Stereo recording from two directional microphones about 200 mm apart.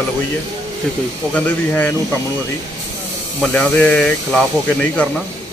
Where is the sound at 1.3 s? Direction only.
10° left (ahead or behind).